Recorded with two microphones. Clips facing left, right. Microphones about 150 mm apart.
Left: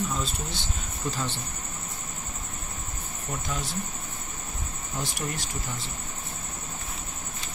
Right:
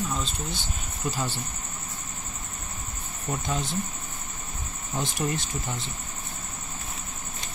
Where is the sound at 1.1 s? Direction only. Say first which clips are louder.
Right 1 dB; 10° right (ahead or behind).